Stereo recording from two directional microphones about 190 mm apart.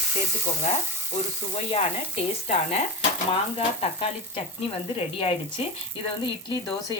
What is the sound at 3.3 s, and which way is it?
Speech, 30° left (ahead or behind).